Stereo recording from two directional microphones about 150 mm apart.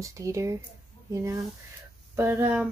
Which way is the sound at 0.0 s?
20° right (ahead or behind).